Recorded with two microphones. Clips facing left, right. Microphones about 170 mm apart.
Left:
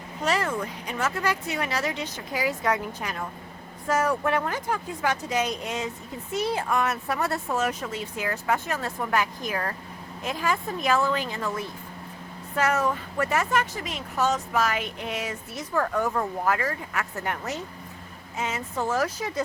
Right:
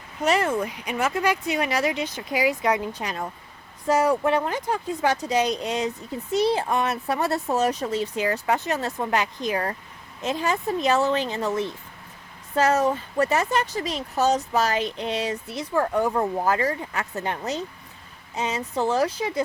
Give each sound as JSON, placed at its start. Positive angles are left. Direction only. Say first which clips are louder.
{"t": 0.3, "sound": "speech", "louder": "right 4 dB", "side_deg": -20}
{"t": 8.1, "sound": "speech", "louder": "right 4 dB", "side_deg": -20}
{"t": 12.5, "sound": "speech", "louder": "right 4 dB", "side_deg": -35}